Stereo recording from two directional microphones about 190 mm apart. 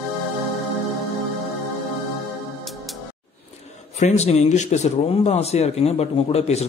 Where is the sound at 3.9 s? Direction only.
35° left (ahead or behind).